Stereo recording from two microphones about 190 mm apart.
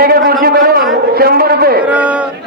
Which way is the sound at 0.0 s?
55° right (ahead or behind).